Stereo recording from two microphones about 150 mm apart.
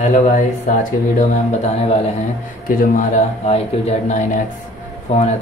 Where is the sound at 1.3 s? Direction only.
45° left (ahead or behind).